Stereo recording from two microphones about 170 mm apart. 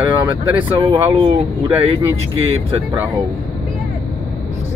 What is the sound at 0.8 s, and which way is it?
Speech, 30° right (ahead or behind).